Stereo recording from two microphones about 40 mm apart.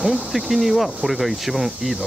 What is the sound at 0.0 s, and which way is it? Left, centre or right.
Speech, centre.